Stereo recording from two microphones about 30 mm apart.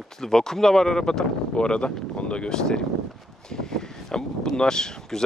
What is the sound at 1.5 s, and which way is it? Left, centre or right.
Speech, left.